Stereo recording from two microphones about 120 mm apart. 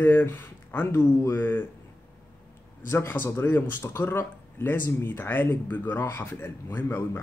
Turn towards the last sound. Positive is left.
turn(degrees=15)  # may be behind; listen again after turning